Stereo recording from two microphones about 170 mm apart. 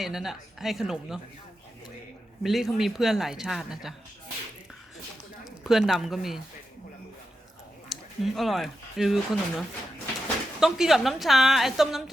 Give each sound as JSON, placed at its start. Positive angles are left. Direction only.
{"t": 0.0, "sound": "speech", "side_deg": 0}
{"t": 2.4, "sound": "speech", "side_deg": 0}
{"t": 5.5, "sound": "speech", "side_deg": 0}
{"t": 7.9, "sound": "speech", "side_deg": 0}